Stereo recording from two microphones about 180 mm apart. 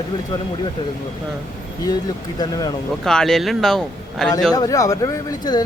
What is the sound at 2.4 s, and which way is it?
Speech, 20° left (ahead or behind).